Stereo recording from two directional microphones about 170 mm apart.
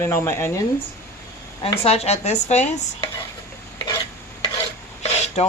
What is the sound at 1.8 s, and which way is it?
Speech, 35° left (ahead or behind).